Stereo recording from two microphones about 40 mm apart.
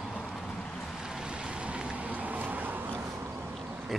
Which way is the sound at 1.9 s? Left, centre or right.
Right.